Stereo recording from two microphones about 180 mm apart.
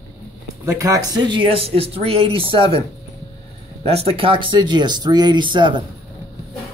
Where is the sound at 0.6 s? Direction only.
20° right (ahead or behind).